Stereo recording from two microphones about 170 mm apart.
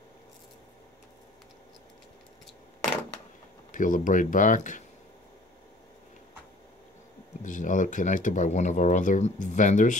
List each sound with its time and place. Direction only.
3.7 s speech: 50° left (ahead or behind)
7.4 s speech: 50° left (ahead or behind)